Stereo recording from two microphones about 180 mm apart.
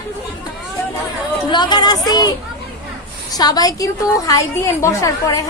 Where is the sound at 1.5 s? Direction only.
25° left (ahead or behind).